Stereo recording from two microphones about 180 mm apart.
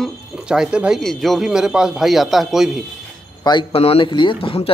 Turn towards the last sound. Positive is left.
turn(degrees=30)  # may be behind; listen again after turning